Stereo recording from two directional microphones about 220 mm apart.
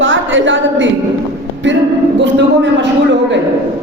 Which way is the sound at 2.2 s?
55° right (ahead or behind).